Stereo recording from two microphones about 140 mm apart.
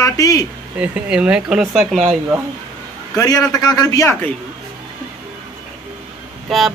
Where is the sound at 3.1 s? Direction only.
25° left (ahead or behind).